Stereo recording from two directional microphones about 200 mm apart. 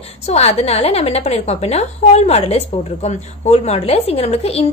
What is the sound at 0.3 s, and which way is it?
A woman's voice, 30° left (ahead or behind).